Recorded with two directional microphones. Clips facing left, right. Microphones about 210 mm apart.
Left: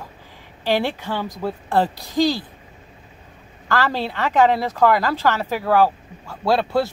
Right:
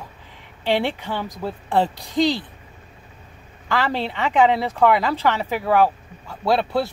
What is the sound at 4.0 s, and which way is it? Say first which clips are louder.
Speech: even; 5° left (ahead or behind).